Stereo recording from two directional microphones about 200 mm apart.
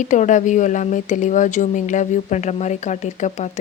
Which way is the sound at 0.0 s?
40° left (ahead or behind).